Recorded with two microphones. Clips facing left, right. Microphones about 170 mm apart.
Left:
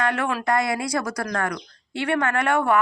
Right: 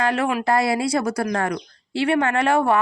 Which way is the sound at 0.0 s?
25° right (ahead or behind).